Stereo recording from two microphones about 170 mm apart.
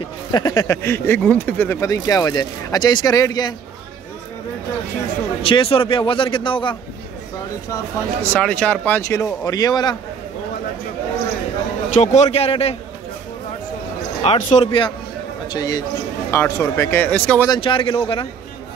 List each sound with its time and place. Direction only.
0.3 s speech: 20° left (ahead or behind)
5.4 s speech: 30° left (ahead or behind)
7.7 s speech: 10° left (ahead or behind)
11.9 s speech: 45° left (ahead or behind)
14.2 s speech: 40° left (ahead or behind)
15.5 s speech: 20° left (ahead or behind)
17.5 s speech: 30° left (ahead or behind)